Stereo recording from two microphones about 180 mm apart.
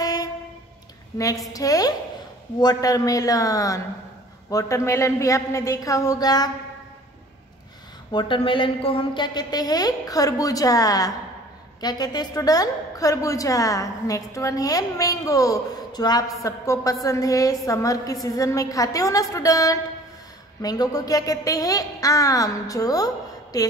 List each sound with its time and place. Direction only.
0.0 s train: 20° left (ahead or behind)
1.1 s a woman's voice: 20° left (ahead or behind)
8.1 s a woman's voice: 25° left (ahead or behind)